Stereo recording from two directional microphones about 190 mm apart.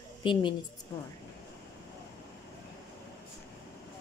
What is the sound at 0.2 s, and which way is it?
Speech, 25° left (ahead or behind).